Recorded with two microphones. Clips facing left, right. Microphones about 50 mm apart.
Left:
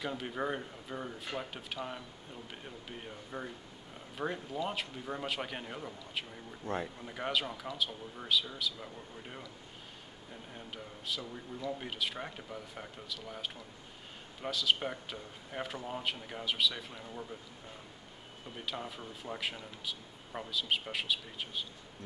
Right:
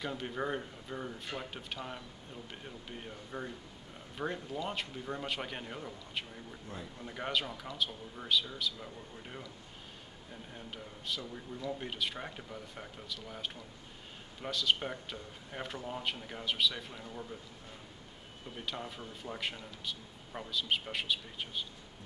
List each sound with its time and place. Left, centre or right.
0.0 s speech: centre
6.6 s speech: left
7.0 s speech: centre
10.5 s speech: centre
18.6 s speech: centre